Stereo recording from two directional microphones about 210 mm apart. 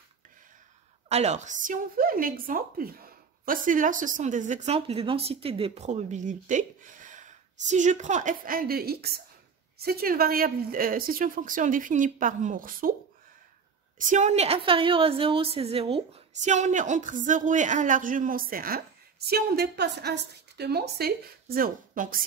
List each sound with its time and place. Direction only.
1.0 s a woman's voice: 30° right (ahead or behind)
13.9 s a woman's voice: 35° right (ahead or behind)